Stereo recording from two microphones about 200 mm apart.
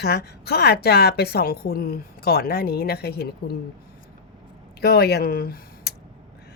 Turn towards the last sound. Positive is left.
turn(degrees=50)  # may be behind; listen again after turning